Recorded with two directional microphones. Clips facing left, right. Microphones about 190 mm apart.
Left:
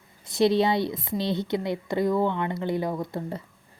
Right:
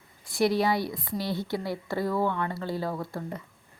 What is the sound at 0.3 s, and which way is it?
Speech, 25° left (ahead or behind).